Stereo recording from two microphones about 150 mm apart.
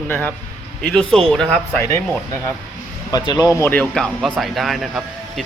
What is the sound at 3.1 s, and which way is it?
Speech, 25° left (ahead or behind).